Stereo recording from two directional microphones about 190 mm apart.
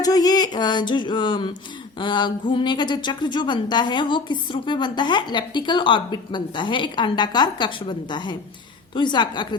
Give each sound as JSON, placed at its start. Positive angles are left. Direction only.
{"t": 0.0, "sound": "a woman's voice", "side_deg": 20}